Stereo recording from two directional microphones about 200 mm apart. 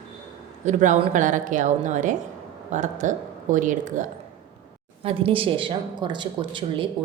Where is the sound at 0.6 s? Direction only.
35° right (ahead or behind).